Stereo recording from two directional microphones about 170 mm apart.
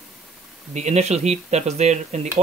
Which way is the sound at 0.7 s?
40° right (ahead or behind).